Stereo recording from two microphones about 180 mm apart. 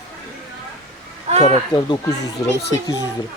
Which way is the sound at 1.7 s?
20° left (ahead or behind).